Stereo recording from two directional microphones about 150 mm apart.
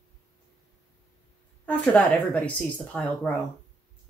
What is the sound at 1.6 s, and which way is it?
Speech, 10° left (ahead or behind).